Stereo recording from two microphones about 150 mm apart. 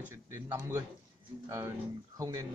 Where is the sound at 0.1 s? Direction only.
15° right (ahead or behind).